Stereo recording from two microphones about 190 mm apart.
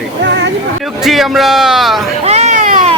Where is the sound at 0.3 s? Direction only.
70° right (ahead or behind).